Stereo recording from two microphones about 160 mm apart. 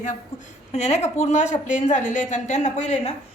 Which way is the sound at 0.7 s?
45° left (ahead or behind).